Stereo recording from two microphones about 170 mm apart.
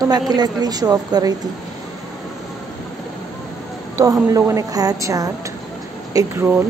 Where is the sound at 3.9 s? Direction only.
20° right (ahead or behind).